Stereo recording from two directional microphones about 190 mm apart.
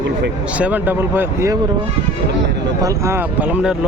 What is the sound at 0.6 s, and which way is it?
Speech, 10° right (ahead or behind).